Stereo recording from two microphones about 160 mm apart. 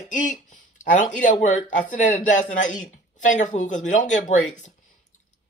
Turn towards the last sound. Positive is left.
turn(degrees=50)  # may be behind; listen again after turning